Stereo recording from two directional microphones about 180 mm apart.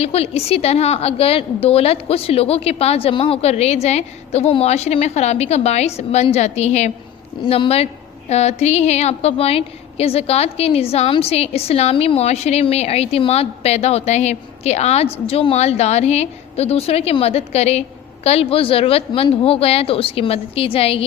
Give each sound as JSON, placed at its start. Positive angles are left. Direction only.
{"t": 0.0, "sound": "a woman's voice", "side_deg": 35}